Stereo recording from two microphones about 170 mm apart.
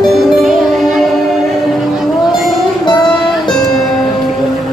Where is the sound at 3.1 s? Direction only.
Centre (ahead or behind).